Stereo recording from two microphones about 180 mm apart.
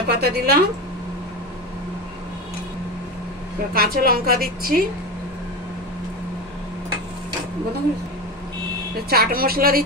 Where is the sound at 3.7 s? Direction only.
55° right (ahead or behind).